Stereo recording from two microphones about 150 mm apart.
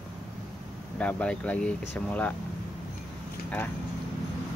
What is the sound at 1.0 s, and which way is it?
Speech, 10° left (ahead or behind).